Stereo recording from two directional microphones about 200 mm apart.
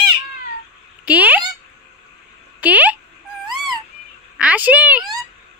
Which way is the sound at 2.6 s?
5° right (ahead or behind).